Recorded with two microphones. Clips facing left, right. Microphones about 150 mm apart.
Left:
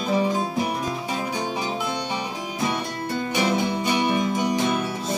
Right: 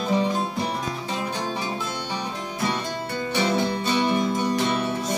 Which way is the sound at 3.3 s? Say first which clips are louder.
Even; 15° left (ahead or behind).